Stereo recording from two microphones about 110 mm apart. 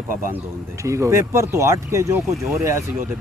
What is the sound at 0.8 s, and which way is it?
Speech, 25° right (ahead or behind).